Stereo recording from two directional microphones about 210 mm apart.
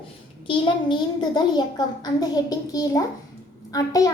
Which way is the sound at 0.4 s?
25° left (ahead or behind).